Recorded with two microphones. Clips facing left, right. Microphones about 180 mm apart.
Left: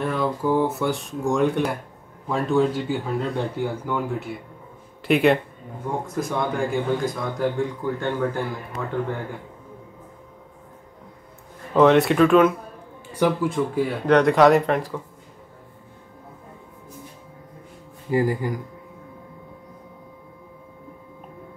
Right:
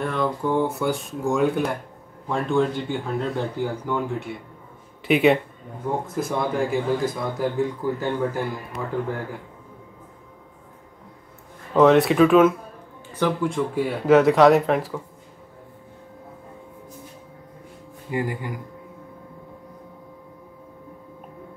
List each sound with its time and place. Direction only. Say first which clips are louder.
0.0 s a man's voice: left 1 dB; centre (ahead or behind)
11.7 s a man's voice: even; centre (ahead or behind)
13.1 s speech: left 2 dB; 10° left (ahead or behind)
13.5 s a man's voice: left 1 dB; centre (ahead or behind)
18.1 s speech: left 5 dB; 35° left (ahead or behind)